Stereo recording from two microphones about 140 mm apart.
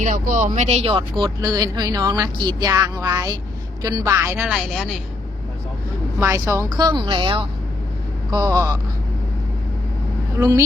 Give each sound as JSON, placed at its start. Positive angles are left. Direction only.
{"t": 0.0, "sound": "speech", "side_deg": -60}
{"t": 1.2, "sound": "a woman's voice", "side_deg": -30}
{"t": 6.1, "sound": "speech", "side_deg": -20}
{"t": 6.8, "sound": "speech", "side_deg": -35}